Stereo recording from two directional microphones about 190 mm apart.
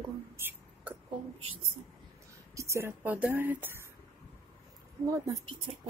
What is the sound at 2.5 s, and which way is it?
Speech, 15° right (ahead or behind).